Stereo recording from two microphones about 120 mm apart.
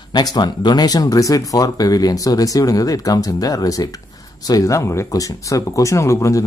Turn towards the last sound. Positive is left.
turn(degrees=25)  # may be behind; listen again after turning